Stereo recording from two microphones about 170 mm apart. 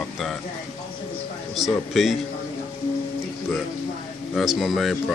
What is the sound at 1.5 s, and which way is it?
Speech, centre (ahead or behind).